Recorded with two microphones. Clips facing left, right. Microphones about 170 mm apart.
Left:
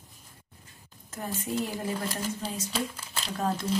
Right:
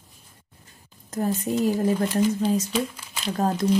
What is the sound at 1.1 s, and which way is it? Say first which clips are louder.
Speech: right 8 dB; 40° right (ahead or behind).